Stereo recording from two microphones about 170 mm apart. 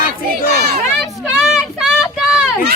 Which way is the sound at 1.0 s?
5° right (ahead or behind).